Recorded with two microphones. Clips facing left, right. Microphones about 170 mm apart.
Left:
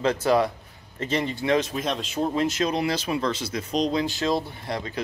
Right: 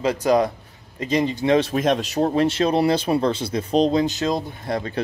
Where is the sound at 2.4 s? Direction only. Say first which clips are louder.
Right 6 dB; 30° right (ahead or behind).